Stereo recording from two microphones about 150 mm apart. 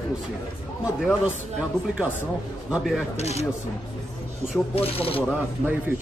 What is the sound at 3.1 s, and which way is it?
Speech, 45° left (ahead or behind).